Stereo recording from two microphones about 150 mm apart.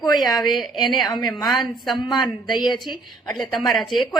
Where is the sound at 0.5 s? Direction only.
Centre (ahead or behind).